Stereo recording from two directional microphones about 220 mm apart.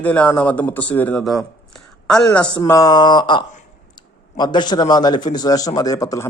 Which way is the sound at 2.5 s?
15° left (ahead or behind).